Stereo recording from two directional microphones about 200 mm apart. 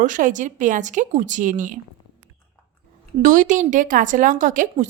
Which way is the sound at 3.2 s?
40° right (ahead or behind).